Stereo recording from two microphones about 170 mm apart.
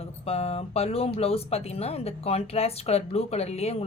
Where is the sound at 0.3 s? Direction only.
35° left (ahead or behind).